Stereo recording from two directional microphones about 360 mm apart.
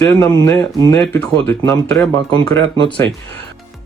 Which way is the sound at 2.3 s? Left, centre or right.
Centre.